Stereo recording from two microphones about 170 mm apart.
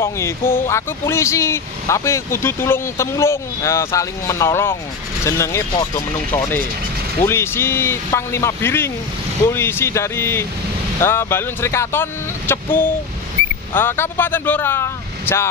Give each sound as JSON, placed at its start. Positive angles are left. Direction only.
{"t": 0.0, "sound": "speech", "side_deg": 15}